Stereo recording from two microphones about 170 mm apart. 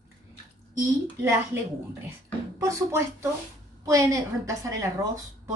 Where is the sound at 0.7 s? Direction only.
15° right (ahead or behind).